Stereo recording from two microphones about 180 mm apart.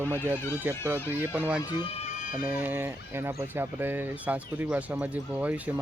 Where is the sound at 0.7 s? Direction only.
10° right (ahead or behind).